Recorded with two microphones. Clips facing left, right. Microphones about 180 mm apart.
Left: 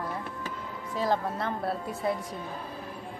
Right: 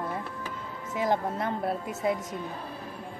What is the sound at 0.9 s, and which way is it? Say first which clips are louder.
A woman's voice: right 1 dB; 20° right (ahead or behind).